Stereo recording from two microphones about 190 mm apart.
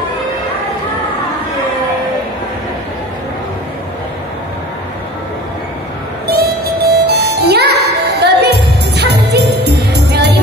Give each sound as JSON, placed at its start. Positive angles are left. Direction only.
{"t": 6.2, "sound": "music", "side_deg": -55}